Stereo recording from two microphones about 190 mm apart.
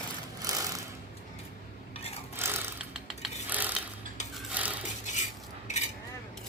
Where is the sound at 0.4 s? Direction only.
20° right (ahead or behind).